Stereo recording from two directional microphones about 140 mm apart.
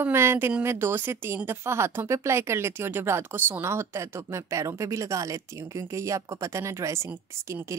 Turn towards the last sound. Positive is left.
turn(degrees=-20)  # may be behind; listen again after turning